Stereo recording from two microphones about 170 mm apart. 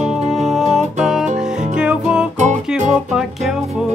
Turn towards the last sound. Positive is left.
turn(degrees=0)  # may be behind; listen again after turning